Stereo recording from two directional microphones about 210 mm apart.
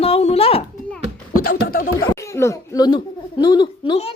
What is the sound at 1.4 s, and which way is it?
Speech, 45° left (ahead or behind).